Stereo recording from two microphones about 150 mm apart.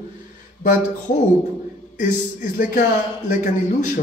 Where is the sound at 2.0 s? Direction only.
55° left (ahead or behind).